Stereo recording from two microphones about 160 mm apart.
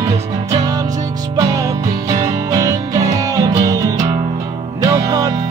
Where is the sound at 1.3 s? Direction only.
20° right (ahead or behind).